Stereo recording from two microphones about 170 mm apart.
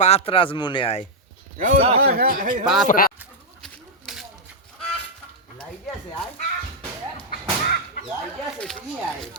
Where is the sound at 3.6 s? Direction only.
Centre (ahead or behind).